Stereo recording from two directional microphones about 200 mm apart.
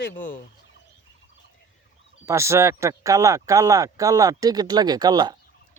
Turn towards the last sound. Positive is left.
turn(degrees=-20)  # may be behind; listen again after turning